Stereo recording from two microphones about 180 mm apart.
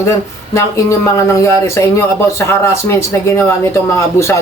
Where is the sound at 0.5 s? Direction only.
15° left (ahead or behind).